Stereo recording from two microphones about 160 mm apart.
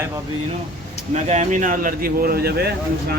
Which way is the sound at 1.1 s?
45° right (ahead or behind).